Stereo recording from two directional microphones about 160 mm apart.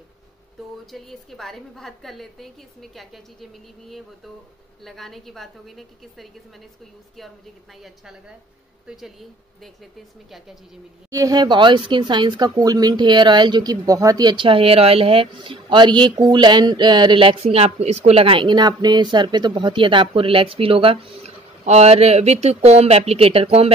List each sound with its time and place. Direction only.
0.9 s a woman's voice: centre (ahead or behind)
4.8 s a woman's voice: centre (ahead or behind)
7.8 s a woman's voice: 5° right (ahead or behind)
11.1 s speech: 20° right (ahead or behind); by 23.7 s 40° right (ahead or behind)